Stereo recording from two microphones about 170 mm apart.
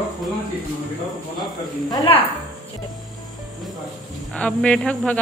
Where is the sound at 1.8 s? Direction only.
25° left (ahead or behind).